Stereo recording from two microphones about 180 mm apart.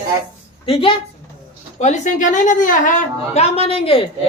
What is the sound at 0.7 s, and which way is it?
Speech, 30° left (ahead or behind).